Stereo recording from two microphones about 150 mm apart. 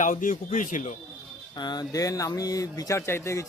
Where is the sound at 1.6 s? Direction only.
30° left (ahead or behind).